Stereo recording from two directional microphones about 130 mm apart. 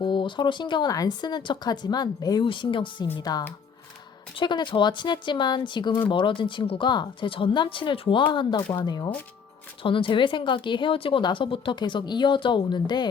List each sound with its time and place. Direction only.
0.0 s speech: 40° left (ahead or behind)